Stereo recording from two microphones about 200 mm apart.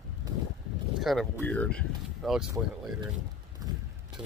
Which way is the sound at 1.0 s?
Centre (ahead or behind).